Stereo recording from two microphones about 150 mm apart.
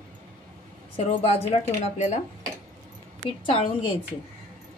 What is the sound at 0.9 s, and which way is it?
Speech, 40° left (ahead or behind).